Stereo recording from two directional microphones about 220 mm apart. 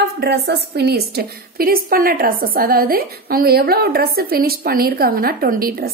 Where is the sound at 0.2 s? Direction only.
50° right (ahead or behind).